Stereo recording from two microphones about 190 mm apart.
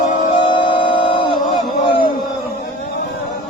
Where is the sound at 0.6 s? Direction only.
25° left (ahead or behind).